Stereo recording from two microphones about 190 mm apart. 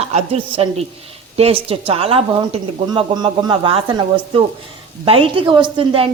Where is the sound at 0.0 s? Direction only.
35° right (ahead or behind).